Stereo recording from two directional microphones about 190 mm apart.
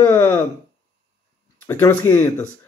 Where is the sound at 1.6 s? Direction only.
10° left (ahead or behind).